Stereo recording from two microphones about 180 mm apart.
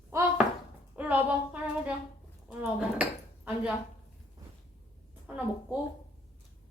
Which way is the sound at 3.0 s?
10° right (ahead or behind).